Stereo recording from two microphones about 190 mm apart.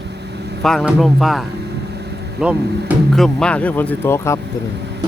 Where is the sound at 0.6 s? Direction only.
Centre (ahead or behind).